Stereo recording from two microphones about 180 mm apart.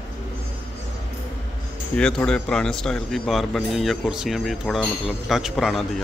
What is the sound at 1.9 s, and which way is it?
Speech, 5° left (ahead or behind).